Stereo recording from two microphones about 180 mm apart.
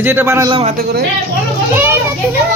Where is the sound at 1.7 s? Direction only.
10° right (ahead or behind).